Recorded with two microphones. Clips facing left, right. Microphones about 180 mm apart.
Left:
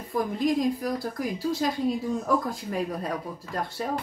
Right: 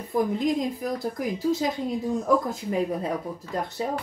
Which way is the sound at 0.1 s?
20° right (ahead or behind).